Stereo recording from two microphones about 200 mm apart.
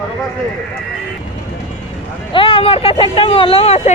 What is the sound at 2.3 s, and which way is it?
Speech, 25° left (ahead or behind).